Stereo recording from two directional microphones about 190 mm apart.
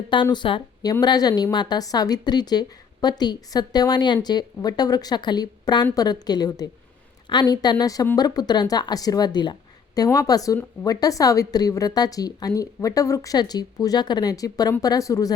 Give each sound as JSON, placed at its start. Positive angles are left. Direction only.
{"t": 0.1, "sound": "speech", "side_deg": 25}